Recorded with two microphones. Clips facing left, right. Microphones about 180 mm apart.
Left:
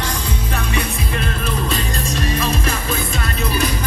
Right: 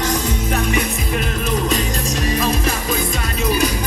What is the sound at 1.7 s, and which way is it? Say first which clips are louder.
Music: right 2 dB; 15° right (ahead or behind).